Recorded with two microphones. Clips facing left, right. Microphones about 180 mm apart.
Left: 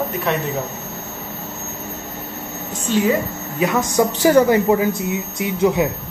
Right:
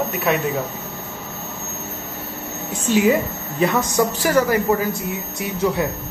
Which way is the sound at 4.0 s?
25° left (ahead or behind).